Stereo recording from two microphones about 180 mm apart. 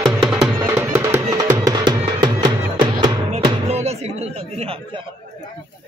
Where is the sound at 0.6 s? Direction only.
15° right (ahead or behind).